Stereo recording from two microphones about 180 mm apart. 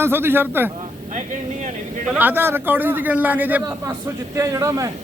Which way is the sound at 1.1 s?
45° right (ahead or behind).